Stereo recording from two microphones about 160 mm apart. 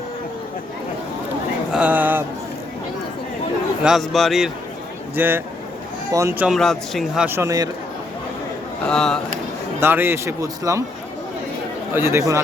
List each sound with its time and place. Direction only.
1.7 s a sound: 10° right (ahead or behind)
3.8 s speech: centre (ahead or behind)
5.1 s speech: 10° right (ahead or behind)
6.6 s speech: centre (ahead or behind)
7.3 s speech: 15° right (ahead or behind)
8.9 s speech: 5° left (ahead or behind)
9.8 s speech: 15° right (ahead or behind)
11.9 s speech: 15° right (ahead or behind)